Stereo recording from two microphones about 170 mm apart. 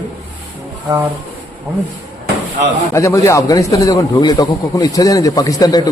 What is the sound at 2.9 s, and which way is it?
A man's voice, 20° left (ahead or behind).